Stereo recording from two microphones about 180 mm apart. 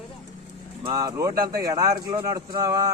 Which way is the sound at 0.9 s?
20° right (ahead or behind).